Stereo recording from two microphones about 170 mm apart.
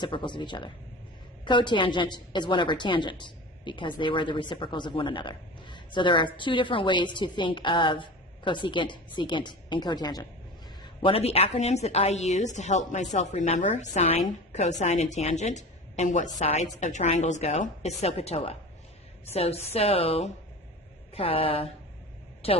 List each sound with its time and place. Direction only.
0.0 s a woman's voice: 30° left (ahead or behind)
11.0 s a woman's voice: 35° left (ahead or behind)